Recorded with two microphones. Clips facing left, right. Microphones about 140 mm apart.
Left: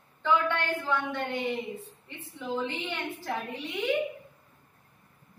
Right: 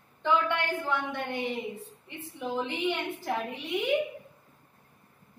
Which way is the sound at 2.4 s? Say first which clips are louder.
Right 1 dB; 15° right (ahead or behind).